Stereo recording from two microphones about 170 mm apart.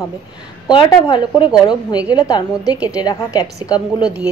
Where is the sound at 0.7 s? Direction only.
25° left (ahead or behind).